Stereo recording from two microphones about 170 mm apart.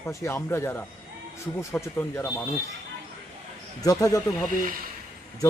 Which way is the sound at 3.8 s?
20° left (ahead or behind).